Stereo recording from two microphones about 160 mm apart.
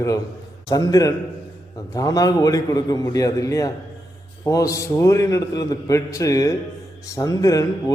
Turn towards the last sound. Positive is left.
turn(degrees=20)  # may be behind; listen again after turning